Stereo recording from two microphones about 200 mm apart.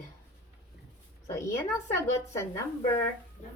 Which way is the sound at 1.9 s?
15° left (ahead or behind).